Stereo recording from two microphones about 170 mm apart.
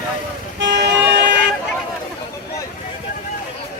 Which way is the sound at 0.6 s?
90° right.